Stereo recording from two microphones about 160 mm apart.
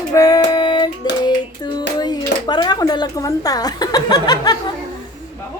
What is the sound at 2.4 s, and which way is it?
Speech, 25° left (ahead or behind).